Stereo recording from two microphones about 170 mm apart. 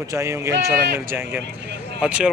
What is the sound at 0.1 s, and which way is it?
A man's voice, 15° right (ahead or behind).